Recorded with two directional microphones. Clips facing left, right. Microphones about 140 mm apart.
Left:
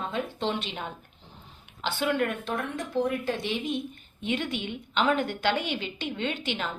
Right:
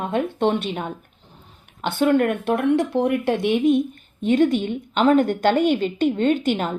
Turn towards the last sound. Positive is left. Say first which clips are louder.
# right 11 dB
turn(degrees=-45)  # may be behind; listen again after turning